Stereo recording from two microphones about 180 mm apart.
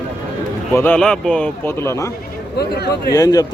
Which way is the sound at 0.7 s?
10° left (ahead or behind).